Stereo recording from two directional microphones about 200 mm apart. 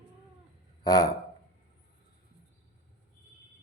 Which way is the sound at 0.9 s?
20° left (ahead or behind).